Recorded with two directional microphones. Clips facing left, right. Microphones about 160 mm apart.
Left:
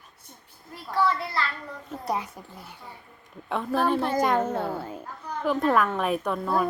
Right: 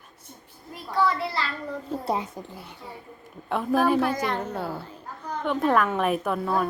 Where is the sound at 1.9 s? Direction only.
25° right (ahead or behind).